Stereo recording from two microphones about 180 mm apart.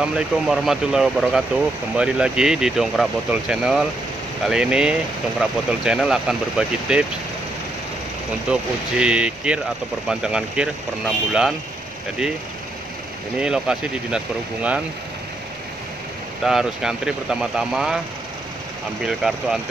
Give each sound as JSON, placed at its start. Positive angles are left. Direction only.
{"t": 0.0, "sound": "speech", "side_deg": -5}
{"t": 8.5, "sound": "speech", "side_deg": -5}
{"t": 13.4, "sound": "speech", "side_deg": -5}
{"t": 16.4, "sound": "speech", "side_deg": -5}
{"t": 19.0, "sound": "speech", "side_deg": -5}